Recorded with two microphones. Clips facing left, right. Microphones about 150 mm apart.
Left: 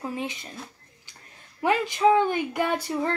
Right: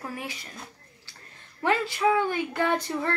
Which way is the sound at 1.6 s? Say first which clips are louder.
Left 3 dB; 15° left (ahead or behind).